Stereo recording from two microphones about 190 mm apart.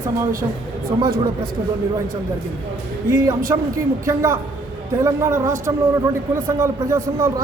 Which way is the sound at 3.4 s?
15° right (ahead or behind).